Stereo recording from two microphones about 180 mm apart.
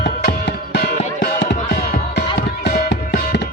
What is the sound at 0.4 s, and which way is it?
Music, 65° left (ahead or behind).